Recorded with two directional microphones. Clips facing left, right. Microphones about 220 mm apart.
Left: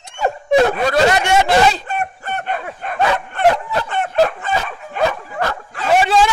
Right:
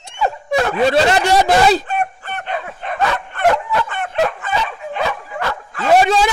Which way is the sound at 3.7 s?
40° left (ahead or behind).